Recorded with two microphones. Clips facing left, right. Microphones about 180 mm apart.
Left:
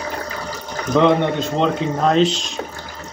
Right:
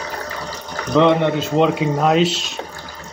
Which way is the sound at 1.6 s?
5° right (ahead or behind).